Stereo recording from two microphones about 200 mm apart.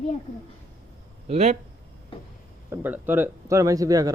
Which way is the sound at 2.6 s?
10° right (ahead or behind).